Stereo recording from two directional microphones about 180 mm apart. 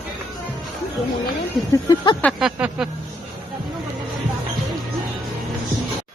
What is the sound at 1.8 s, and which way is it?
Speech, 25° left (ahead or behind).